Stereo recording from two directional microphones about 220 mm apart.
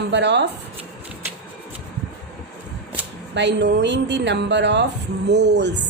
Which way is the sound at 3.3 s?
50° right (ahead or behind).